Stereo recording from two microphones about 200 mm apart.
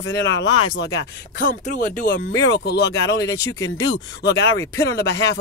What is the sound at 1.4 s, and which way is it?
Speech, 45° left (ahead or behind).